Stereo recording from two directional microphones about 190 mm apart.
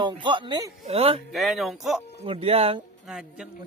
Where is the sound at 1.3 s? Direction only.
Centre (ahead or behind).